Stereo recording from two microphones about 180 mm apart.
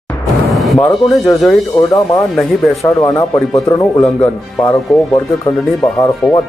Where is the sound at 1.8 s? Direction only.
20° left (ahead or behind).